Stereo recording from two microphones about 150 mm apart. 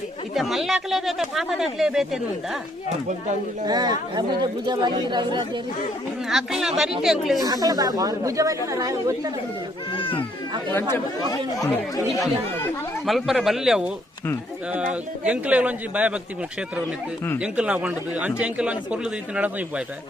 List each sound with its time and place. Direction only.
0.3 s speech: centre (ahead or behind)
3.7 s speech: 30° right (ahead or behind)
6.2 s speech: 5° right (ahead or behind)
7.4 s speech: 25° right (ahead or behind)
9.9 s baby cry: 35° left (ahead or behind)
10.7 s speech: 15° left (ahead or behind)
13.1 s speech: centre (ahead or behind)
15.3 s speech: 10° right (ahead or behind)